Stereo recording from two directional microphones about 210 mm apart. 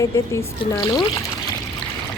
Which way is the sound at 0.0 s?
15° left (ahead or behind).